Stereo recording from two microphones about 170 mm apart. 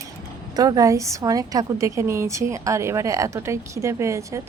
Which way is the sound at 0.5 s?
20° right (ahead or behind).